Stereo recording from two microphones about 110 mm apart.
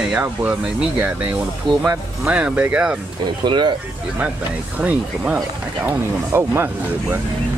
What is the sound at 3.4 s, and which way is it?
Speech, 45° right (ahead or behind).